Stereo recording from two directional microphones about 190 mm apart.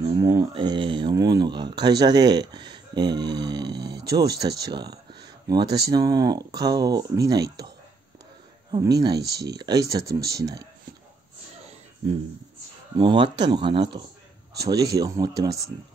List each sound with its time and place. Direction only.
0.0 s speech: 20° right (ahead or behind)
4.6 s a sound: 20° right (ahead or behind)
5.9 s speech: 20° right (ahead or behind)
8.7 s speech: 20° right (ahead or behind)
9.3 s speech: 60° right (ahead or behind)
12.9 s speech: 25° right (ahead or behind)